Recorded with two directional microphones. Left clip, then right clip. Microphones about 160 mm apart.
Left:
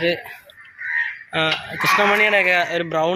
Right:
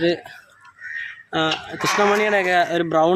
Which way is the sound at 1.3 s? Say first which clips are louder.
Even; 55° right (ahead or behind).